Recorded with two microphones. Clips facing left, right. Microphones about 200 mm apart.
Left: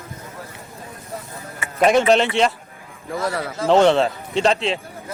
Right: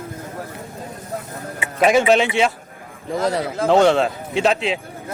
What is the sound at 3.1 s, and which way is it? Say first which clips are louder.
Speech: right 4 dB; 20° right (ahead or behind).